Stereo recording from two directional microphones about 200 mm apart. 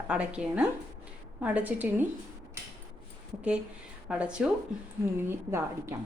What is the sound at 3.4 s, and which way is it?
A woman's voice, 5° right (ahead or behind).